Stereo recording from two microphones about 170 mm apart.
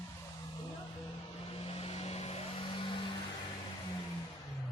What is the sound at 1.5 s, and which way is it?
Vehicle, 35° left (ahead or behind).